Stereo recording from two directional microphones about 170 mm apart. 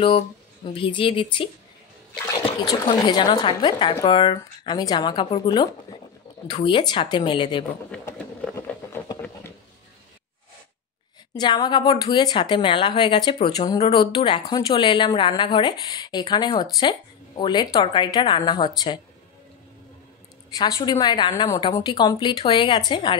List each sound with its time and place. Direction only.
0.7 s speech: 30° left (ahead or behind)
2.6 s speech: 25° left (ahead or behind)
7.9 s a sound: 5° left (ahead or behind)
11.3 s speech: 25° left (ahead or behind)
13.9 s speech: 25° left (ahead or behind)
20.5 s speech: 20° left (ahead or behind)